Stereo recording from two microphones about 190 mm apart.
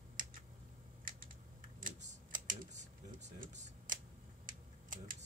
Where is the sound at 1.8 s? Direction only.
40° right (ahead or behind).